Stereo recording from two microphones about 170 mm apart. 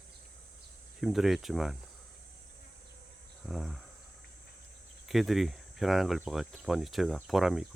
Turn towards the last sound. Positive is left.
turn(degrees=0)  # may be behind; listen again after turning